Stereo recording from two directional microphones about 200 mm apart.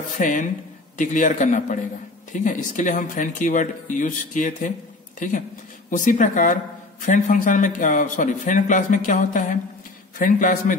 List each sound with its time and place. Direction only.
0.2 s speech: 40° left (ahead or behind)